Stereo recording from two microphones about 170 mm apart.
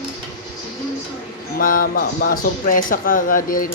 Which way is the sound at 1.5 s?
55° left (ahead or behind).